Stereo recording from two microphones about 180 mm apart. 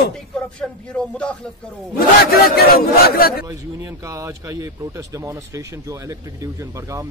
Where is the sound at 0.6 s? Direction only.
5° left (ahead or behind).